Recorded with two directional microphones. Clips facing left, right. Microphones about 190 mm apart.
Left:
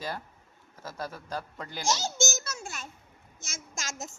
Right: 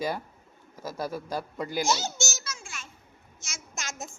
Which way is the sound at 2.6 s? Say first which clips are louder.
Left 4 dB; 40° left (ahead or behind).